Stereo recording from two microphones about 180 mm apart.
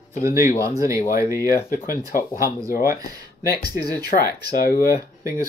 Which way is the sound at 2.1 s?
50° left (ahead or behind).